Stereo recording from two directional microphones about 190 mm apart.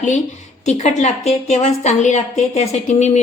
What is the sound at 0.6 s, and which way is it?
A woman's voice, 35° left (ahead or behind).